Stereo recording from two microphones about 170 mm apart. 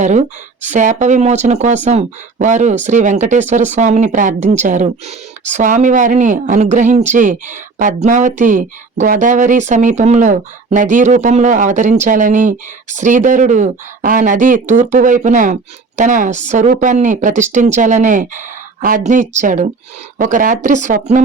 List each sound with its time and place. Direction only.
0.0 s speech: 45° right (ahead or behind)